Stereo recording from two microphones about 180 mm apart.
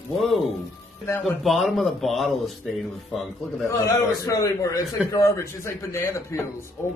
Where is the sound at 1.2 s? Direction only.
Centre (ahead or behind).